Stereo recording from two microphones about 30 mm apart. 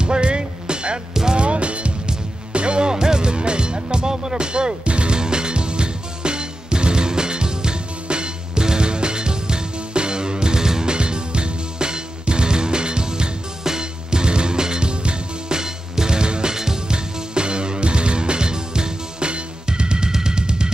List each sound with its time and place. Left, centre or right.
0.0 s music: right
2.9 s music: right
10.9 s music: right